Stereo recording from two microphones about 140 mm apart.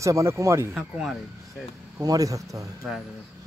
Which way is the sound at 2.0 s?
25° right (ahead or behind).